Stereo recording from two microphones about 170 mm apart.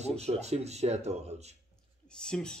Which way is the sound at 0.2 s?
40° right (ahead or behind).